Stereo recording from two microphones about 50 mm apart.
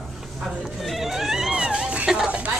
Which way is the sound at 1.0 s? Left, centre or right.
Centre.